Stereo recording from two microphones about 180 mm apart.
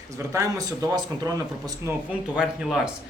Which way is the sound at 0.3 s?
20° right (ahead or behind).